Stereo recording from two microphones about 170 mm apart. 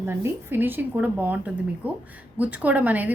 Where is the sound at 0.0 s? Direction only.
15° right (ahead or behind).